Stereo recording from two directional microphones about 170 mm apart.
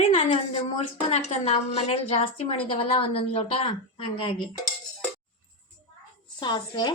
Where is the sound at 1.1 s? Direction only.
40° left (ahead or behind).